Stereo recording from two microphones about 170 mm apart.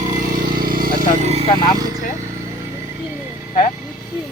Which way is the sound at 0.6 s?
60° right (ahead or behind).